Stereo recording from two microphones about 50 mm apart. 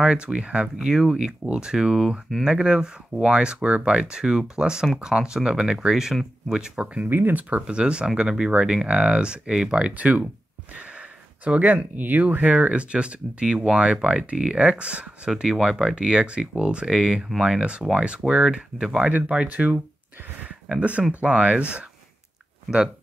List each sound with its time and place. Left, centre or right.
0.0 s speech: right
7.1 s speech: right
7.6 s speech: centre
11.4 s speech: right; by 17.6 s centre
17.6 s speech: right
19.2 s speech: right
21.1 s speech: right